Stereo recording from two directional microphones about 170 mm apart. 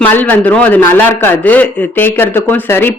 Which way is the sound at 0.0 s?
10° left (ahead or behind).